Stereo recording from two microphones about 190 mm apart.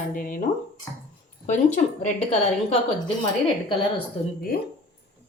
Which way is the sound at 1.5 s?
40° left (ahead or behind).